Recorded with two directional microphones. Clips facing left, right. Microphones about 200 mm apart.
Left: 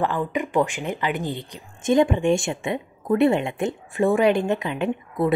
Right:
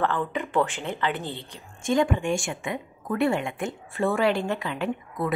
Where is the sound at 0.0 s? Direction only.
15° left (ahead or behind).